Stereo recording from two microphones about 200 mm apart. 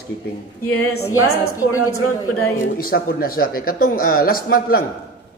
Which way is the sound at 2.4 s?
45° left (ahead or behind).